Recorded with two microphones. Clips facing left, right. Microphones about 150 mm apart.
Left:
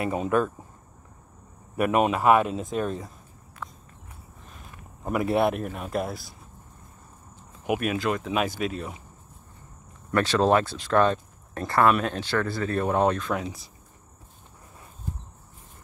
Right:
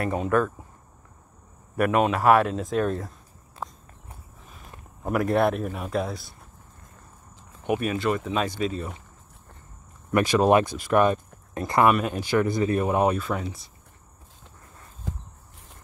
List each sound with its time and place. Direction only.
0.0 s speech: 10° left (ahead or behind)
1.8 s speech: 15° left (ahead or behind)
2.2 s a man's voice: 5° left (ahead or behind)
5.0 s a man's voice: centre (ahead or behind)
7.6 s a man's voice: 5° left (ahead or behind)
10.1 s speech: 10° right (ahead or behind)
15.1 s walk: 90° right